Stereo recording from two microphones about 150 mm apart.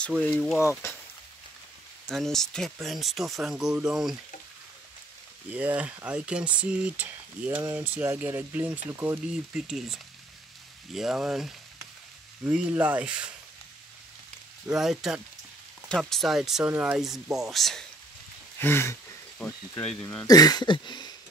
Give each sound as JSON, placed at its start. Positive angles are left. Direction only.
{"t": 0.2, "sound": "speech", "side_deg": 5}
{"t": 0.6, "sound": "speech", "side_deg": 20}
{"t": 2.0, "sound": "speech", "side_deg": 0}
{"t": 5.5, "sound": "speech", "side_deg": -10}
{"t": 14.7, "sound": "speech", "side_deg": -5}
{"t": 18.6, "sound": "a sound", "side_deg": 15}
{"t": 19.8, "sound": "speech", "side_deg": 5}
{"t": 20.2, "sound": "a sound", "side_deg": 25}